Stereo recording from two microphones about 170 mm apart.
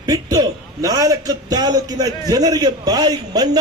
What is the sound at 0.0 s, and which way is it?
A man's voice, 20° right (ahead or behind).